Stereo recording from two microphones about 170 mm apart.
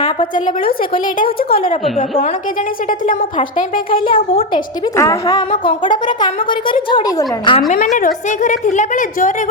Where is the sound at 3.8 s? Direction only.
30° left (ahead or behind).